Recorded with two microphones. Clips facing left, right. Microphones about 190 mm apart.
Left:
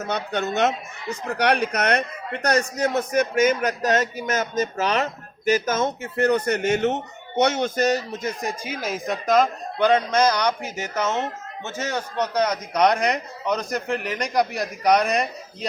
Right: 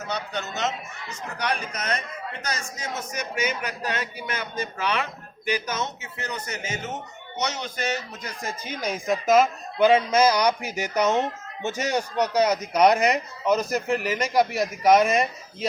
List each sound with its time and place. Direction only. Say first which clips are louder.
0.0 s a man's voice: left 5 dB; 55° left (ahead or behind)
1.4 s a man's voice: left 8 dB; 65° left (ahead or behind); by 8.2 s 40° left (ahead or behind)
8.2 s speech: left 6 dB; 20° left (ahead or behind)
8.8 s a man's voice: right 3 dB; centre (ahead or behind)